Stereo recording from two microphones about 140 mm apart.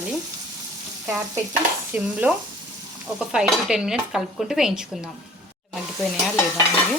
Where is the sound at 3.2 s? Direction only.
Centre (ahead or behind).